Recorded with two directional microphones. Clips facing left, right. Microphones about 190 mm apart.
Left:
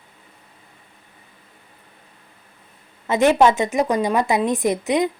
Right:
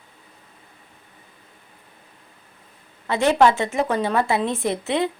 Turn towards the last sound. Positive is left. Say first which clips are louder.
# left 3 dB
turn(degrees=15)  # may be behind; listen again after turning